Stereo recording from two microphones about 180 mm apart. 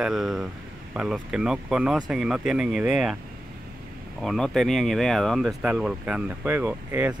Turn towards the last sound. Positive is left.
turn(degrees=-10)  # may be behind; listen again after turning